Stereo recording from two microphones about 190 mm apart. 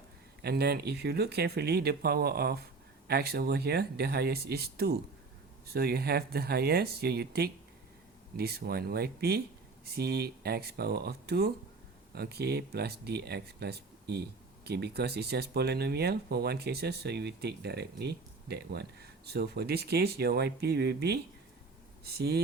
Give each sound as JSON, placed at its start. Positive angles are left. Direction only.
{"t": 0.4, "sound": "speech", "side_deg": -60}